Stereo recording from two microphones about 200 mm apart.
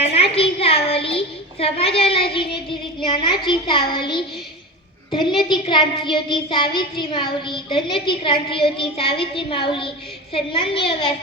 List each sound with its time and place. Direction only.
0.1 s a woman's voice: 30° left (ahead or behind)
5.1 s child singing: 25° left (ahead or behind)